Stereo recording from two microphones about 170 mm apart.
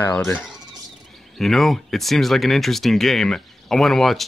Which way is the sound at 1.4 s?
Centre (ahead or behind).